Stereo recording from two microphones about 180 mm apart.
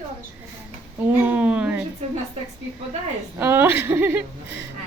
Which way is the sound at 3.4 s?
10° right (ahead or behind).